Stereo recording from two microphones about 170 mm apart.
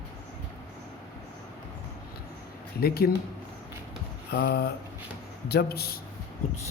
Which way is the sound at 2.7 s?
65° left (ahead or behind).